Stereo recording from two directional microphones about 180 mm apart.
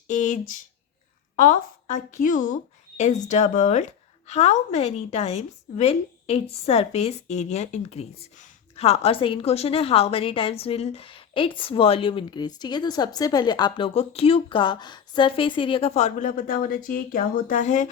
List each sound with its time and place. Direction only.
0.1 s a woman's voice: 45° left (ahead or behind)